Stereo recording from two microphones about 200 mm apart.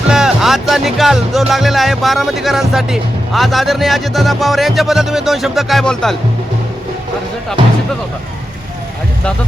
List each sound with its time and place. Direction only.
0.1 s speech: 5° right (ahead or behind)
7.6 s speech: 25° right (ahead or behind)